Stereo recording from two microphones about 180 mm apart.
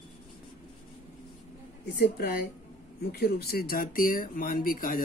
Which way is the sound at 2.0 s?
60° left (ahead or behind).